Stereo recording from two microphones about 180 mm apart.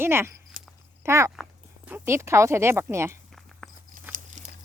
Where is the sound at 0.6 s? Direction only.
45° right (ahead or behind).